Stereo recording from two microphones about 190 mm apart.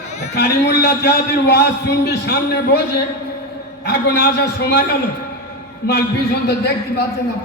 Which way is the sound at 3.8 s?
60° left (ahead or behind).